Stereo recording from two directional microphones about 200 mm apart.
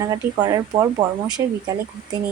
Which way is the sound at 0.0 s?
15° right (ahead or behind).